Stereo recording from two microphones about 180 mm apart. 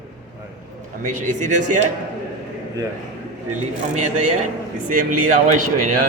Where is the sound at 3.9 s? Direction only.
40° right (ahead or behind).